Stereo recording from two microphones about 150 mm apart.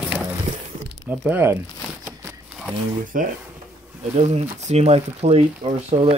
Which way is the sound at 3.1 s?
65° right (ahead or behind).